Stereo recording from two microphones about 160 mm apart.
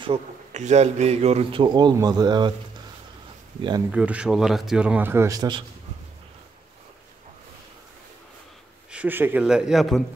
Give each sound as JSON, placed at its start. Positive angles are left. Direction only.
{"t": 0.0, "sound": "a man's voice", "side_deg": -40}
{"t": 3.9, "sound": "speech", "side_deg": -5}
{"t": 8.9, "sound": "speech", "side_deg": -10}